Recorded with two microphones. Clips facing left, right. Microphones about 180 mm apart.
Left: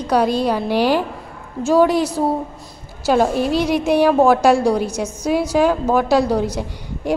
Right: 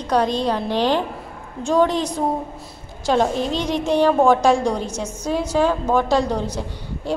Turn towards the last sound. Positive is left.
turn(degrees=10)  # may be behind; listen again after turning